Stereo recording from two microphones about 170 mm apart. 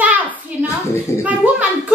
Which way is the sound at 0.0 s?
10° right (ahead or behind).